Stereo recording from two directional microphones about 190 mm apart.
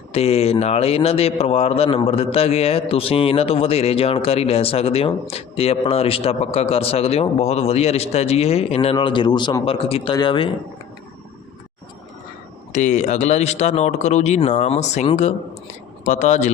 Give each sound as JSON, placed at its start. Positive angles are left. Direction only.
{"t": 0.1, "sound": "a man's voice", "side_deg": 30}
{"t": 12.7, "sound": "a man's voice", "side_deg": 40}